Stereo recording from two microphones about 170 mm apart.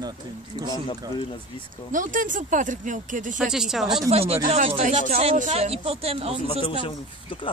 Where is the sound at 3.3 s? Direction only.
5° right (ahead or behind).